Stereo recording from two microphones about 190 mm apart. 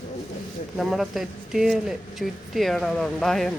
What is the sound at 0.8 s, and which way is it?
Speech, centre (ahead or behind).